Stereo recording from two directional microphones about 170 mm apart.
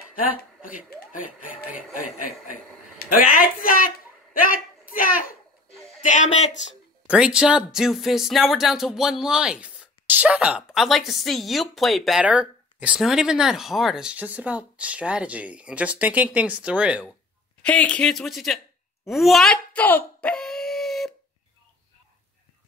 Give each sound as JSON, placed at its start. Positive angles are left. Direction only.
{"t": 0.7, "sound": "speech", "side_deg": 55}
{"t": 3.1, "sound": "a sound", "side_deg": 55}
{"t": 6.0, "sound": "speech", "side_deg": 45}
{"t": 7.1, "sound": "speech", "side_deg": -5}
{"t": 17.6, "sound": "speech", "side_deg": 5}
{"t": 19.0, "sound": "dog", "side_deg": 0}